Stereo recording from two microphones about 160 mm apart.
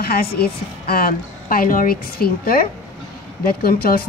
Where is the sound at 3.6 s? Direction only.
70° left (ahead or behind).